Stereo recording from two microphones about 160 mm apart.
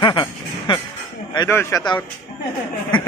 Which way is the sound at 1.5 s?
15° left (ahead or behind).